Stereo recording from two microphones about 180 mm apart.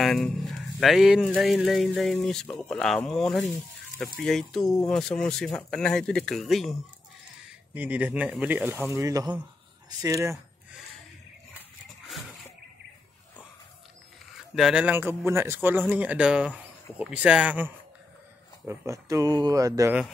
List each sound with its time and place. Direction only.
0.0 s a man's voice: centre (ahead or behind); by 10.3 s 20° right (ahead or behind)
14.5 s a man's voice: 5° right (ahead or behind); by 19.9 s 20° right (ahead or behind)